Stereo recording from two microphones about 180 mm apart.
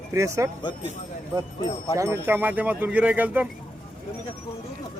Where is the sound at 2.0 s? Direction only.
15° right (ahead or behind).